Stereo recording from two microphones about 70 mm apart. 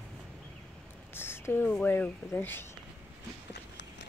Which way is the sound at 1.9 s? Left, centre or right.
Left.